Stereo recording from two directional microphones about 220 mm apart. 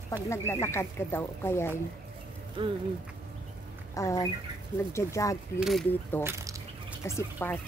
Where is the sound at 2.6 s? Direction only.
20° right (ahead or behind).